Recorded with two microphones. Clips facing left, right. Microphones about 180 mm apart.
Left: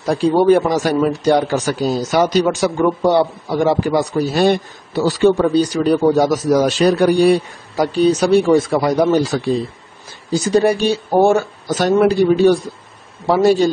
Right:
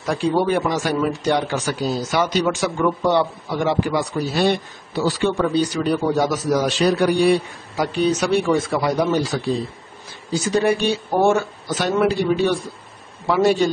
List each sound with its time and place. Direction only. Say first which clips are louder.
0.0 s speech: left 6 dB; 35° left (ahead or behind)